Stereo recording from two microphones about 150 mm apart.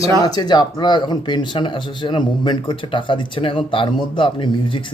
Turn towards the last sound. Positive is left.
turn(degrees=35)  # may be behind; listen again after turning